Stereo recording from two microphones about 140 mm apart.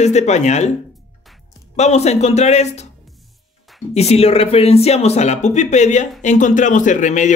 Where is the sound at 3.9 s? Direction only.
50° left (ahead or behind).